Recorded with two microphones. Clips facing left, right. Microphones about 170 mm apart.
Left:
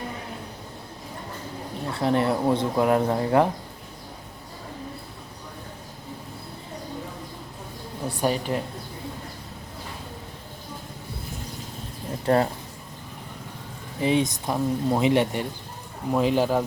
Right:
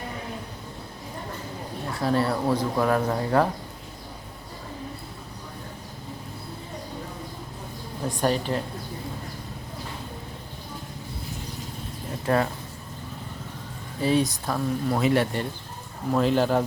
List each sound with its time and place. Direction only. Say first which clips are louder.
1.9 s speech: left 2 dB; 25° left (ahead or behind)
8.2 s a woman's voice: even; 10° left (ahead or behind)
12.2 s speech: left 2 dB; 30° left (ahead or behind)
14.0 s a woman's voice: even; 20° left (ahead or behind)